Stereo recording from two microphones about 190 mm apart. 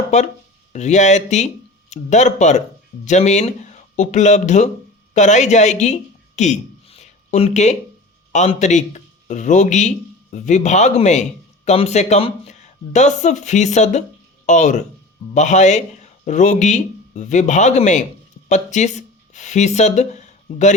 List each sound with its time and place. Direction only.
0.1 s a man's voice: 40° left (ahead or behind)